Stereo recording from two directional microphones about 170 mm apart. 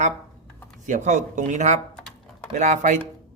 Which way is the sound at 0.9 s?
45° right (ahead or behind).